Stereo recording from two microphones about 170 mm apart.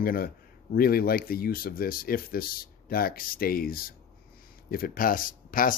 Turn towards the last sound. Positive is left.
turn(degrees=55)  # may be behind; listen again after turning